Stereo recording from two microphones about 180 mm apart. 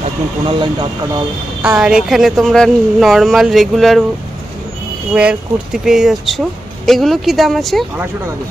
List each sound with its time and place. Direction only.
0.5 s speech: 25° right (ahead or behind)
1.6 s speech: 5° right (ahead or behind)
5.1 s speech: 5° right (ahead or behind)